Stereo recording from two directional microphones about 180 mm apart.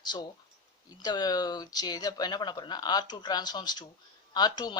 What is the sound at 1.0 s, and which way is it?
Speech, 20° left (ahead or behind).